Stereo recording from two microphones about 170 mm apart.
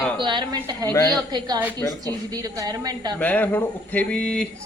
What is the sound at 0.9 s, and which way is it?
Speech, 20° left (ahead or behind).